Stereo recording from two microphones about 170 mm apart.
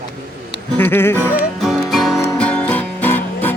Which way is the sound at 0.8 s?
15° left (ahead or behind).